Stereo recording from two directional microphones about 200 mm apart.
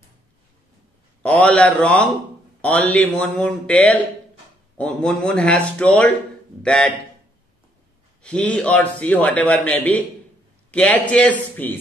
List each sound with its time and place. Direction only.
1.2 s a man's voice: 5° left (ahead or behind)
8.2 s a man's voice: 5° left (ahead or behind)